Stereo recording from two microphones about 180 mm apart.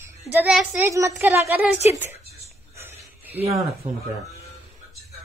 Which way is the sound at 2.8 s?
10° right (ahead or behind).